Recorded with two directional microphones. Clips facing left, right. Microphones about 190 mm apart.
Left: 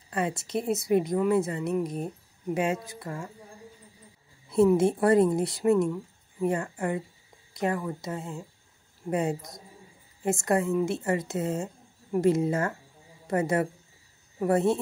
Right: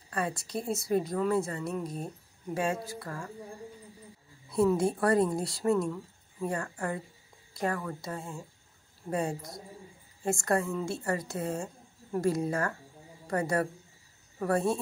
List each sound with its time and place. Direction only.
0.1 s a woman's voice: 20° left (ahead or behind)
4.5 s a woman's voice: 25° left (ahead or behind)